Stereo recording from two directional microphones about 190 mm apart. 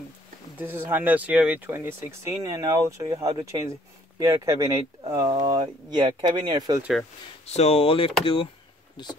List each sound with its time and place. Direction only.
0.6 s speech: 10° right (ahead or behind)
6.8 s speech: centre (ahead or behind)
7.5 s speech: 35° left (ahead or behind)